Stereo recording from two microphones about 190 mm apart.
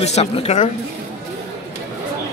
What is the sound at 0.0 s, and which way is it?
Speech, 35° left (ahead or behind).